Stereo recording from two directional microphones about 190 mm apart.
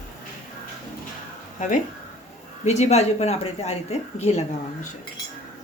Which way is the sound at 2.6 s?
35° left (ahead or behind).